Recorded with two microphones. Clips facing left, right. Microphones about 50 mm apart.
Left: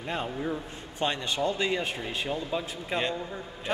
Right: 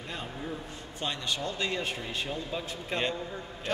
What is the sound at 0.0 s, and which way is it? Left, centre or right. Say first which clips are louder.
A man's voice: left 6 dB; left.